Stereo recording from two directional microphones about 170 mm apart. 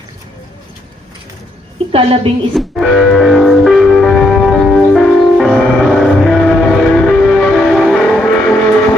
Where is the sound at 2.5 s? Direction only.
Centre (ahead or behind).